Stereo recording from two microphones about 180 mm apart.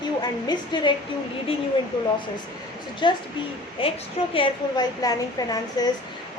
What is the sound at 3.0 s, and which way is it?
A woman's voice, 25° left (ahead or behind).